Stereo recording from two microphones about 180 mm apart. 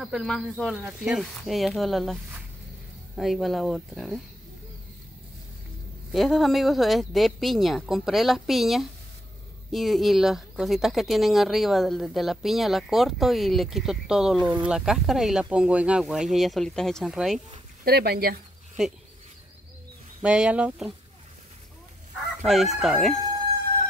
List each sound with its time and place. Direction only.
0.0 s speech: centre (ahead or behind)
3.2 s speech: centre (ahead or behind)
6.1 s speech: centre (ahead or behind)
17.8 s speech: 60° right (ahead or behind)
20.2 s speech: 5° right (ahead or behind)
22.4 s speech: centre (ahead or behind)